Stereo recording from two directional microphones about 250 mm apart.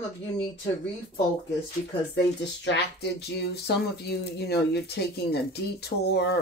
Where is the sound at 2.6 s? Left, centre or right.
Left.